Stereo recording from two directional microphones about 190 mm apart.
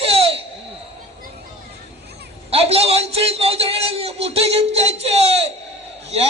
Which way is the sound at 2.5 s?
30° right (ahead or behind).